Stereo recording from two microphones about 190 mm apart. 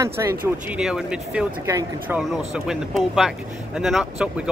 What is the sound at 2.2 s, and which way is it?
Speech, centre (ahead or behind).